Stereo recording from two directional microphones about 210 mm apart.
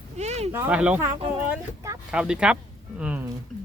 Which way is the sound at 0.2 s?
30° right (ahead or behind).